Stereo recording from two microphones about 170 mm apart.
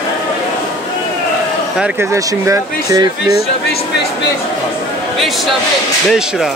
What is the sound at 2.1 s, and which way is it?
Speech, 15° right (ahead or behind).